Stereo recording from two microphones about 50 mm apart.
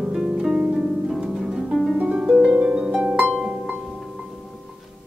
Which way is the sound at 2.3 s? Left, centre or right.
Centre.